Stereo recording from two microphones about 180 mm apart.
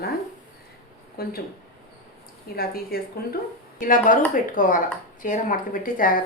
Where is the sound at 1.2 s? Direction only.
55° left (ahead or behind).